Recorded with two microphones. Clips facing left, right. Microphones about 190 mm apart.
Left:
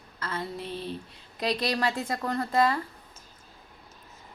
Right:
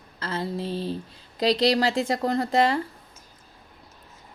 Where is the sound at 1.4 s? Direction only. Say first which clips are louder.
Right 7 dB; 30° right (ahead or behind).